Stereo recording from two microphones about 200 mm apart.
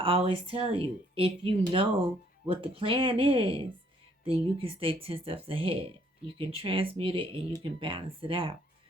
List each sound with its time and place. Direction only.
0.0 s speech: 25° right (ahead or behind)